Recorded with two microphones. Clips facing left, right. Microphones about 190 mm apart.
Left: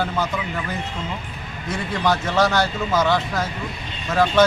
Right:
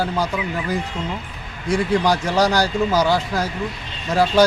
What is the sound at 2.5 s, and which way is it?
Speech, 35° right (ahead or behind).